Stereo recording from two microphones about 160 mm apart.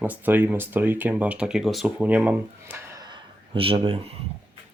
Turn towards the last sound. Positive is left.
turn(degrees=-35)  # may be behind; listen again after turning